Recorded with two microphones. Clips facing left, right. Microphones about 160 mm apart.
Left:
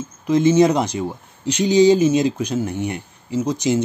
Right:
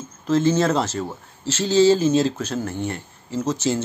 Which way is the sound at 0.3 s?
15° left (ahead or behind).